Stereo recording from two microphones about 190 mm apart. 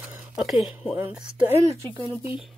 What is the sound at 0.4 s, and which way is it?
Speech, centre (ahead or behind).